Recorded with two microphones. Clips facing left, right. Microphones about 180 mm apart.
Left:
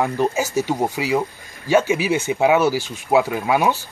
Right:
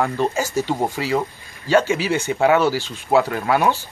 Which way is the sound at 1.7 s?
15° left (ahead or behind).